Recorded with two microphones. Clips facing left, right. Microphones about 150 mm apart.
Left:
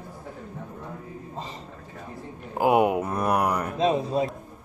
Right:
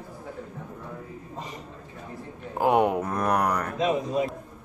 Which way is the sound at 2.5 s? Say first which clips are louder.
Left 1 dB; 10° left (ahead or behind).